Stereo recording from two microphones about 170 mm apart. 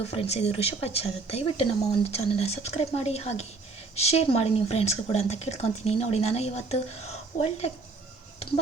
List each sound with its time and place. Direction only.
0.1 s speech: 35° left (ahead or behind)